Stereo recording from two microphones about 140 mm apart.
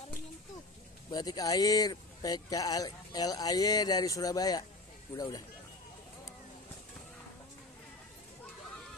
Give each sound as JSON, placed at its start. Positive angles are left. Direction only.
{"t": 1.1, "sound": "speech", "side_deg": 25}